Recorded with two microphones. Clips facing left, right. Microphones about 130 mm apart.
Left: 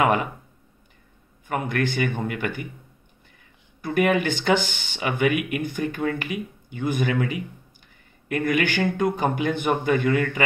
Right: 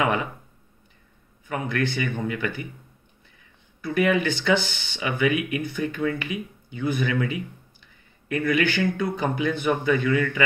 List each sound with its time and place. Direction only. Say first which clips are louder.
0.0 s speech: left 3 dB; 50° left (ahead or behind)
1.5 s speech: left 1 dB; 50° left (ahead or behind)
3.8 s speech: left 1 dB; 50° left (ahead or behind)
8.3 s speech: even; 50° left (ahead or behind)